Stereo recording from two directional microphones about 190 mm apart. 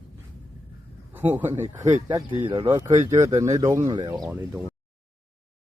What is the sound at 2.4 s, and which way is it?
Speech, 25° right (ahead or behind).